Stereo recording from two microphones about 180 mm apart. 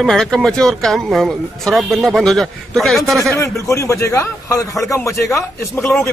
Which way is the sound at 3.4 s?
15° left (ahead or behind).